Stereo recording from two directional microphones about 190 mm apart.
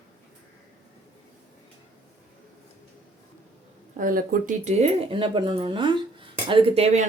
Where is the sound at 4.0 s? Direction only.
45° right (ahead or behind).